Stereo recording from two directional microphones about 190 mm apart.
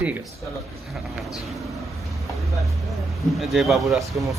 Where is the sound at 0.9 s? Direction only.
Centre (ahead or behind).